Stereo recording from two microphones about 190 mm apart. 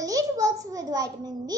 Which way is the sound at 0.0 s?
15° right (ahead or behind).